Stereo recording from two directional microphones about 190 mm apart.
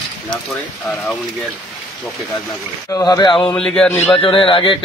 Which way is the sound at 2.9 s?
20° left (ahead or behind).